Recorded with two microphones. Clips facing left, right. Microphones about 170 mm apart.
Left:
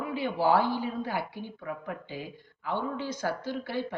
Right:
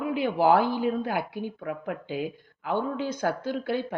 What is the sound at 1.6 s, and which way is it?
Speech, 90° right.